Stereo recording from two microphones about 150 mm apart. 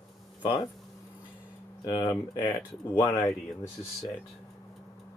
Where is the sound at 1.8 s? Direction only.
30° left (ahead or behind).